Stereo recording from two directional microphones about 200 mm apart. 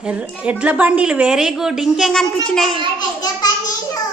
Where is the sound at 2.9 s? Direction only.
20° left (ahead or behind).